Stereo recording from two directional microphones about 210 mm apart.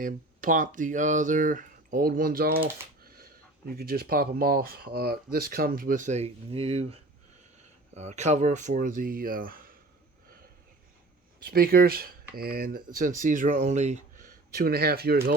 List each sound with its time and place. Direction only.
0.0 s speech: 40° right (ahead or behind)
11.4 s speech: 45° right (ahead or behind)